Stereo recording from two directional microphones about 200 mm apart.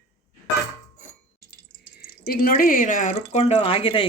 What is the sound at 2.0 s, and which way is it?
Speech, 45° left (ahead or behind).